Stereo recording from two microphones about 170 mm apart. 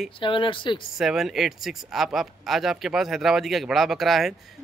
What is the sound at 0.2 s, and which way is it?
Speech, 30° left (ahead or behind).